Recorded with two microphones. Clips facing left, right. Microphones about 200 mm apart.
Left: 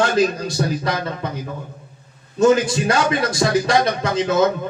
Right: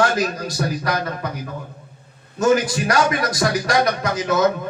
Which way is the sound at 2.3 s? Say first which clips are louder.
Left 3 dB; 25° left (ahead or behind).